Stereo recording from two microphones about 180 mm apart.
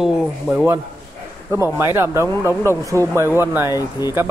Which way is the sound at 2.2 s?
15° left (ahead or behind).